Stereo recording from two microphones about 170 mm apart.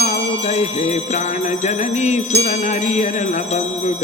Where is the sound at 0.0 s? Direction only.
40° left (ahead or behind).